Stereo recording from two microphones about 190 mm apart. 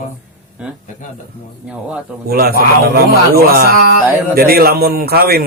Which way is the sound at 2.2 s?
50° right (ahead or behind).